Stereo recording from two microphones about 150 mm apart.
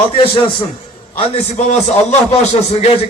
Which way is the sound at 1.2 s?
50° left (ahead or behind).